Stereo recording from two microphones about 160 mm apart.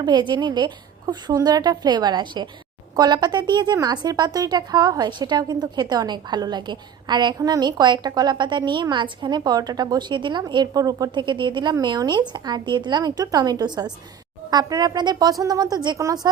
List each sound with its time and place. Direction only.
0.0 s a woman's voice: 25° right (ahead or behind)